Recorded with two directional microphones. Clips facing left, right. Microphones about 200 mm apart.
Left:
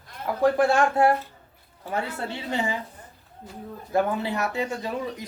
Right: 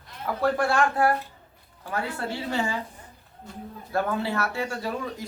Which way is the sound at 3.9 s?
15° left (ahead or behind).